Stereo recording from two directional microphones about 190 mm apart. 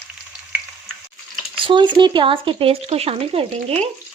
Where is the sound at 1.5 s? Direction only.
25° right (ahead or behind).